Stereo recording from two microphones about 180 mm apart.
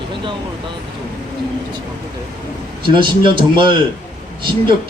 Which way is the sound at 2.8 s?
25° right (ahead or behind).